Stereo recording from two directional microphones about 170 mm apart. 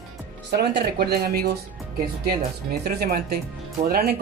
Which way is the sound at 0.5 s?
70° right (ahead or behind).